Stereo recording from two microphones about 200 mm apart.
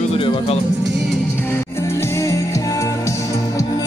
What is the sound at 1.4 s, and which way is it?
Music, 10° left (ahead or behind).